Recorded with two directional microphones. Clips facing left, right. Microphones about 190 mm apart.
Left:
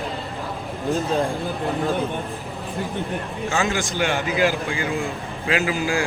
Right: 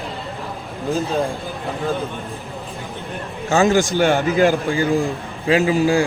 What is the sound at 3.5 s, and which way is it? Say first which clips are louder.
A man's voice: right 9 dB; 40° right (ahead or behind).